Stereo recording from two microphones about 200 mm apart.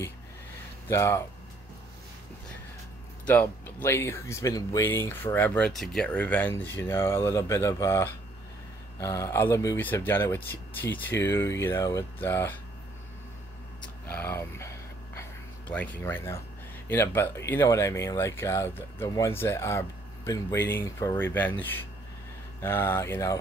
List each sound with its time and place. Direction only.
0.8 s speech: 15° left (ahead or behind)
3.3 s speech: 10° left (ahead or behind)
14.0 s speech: 10° left (ahead or behind)
15.1 s a sound: 5° left (ahead or behind)
16.9 s speech: 10° left (ahead or behind)